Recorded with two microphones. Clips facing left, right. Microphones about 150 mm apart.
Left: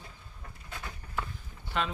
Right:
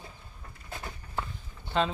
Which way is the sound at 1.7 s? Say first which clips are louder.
Right 5 dB; 30° right (ahead or behind).